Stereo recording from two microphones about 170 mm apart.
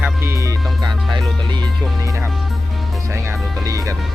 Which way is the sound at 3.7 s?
20° right (ahead or behind).